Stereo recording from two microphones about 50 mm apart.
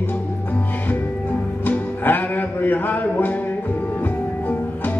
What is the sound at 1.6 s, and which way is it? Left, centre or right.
Music, left.